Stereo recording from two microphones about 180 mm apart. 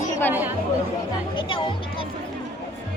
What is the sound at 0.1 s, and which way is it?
Chatter, 10° left (ahead or behind).